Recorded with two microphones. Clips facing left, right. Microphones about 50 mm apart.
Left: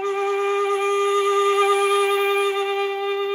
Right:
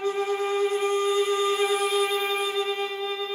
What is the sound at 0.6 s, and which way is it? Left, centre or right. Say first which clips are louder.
Music: left 4 dB; left.